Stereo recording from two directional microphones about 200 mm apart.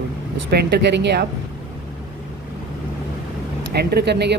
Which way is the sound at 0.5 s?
55° right (ahead or behind).